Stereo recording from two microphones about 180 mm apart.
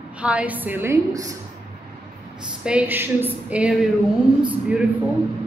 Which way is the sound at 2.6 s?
10° right (ahead or behind).